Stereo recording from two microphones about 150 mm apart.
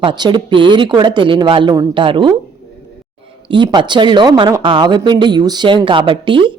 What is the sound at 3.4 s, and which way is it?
Speech, 30° right (ahead or behind).